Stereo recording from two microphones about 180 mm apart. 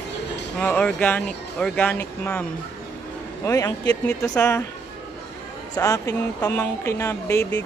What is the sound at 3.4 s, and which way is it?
Speech, 15° left (ahead or behind).